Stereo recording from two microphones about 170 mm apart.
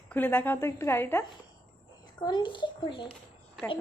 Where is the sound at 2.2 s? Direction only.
25° left (ahead or behind).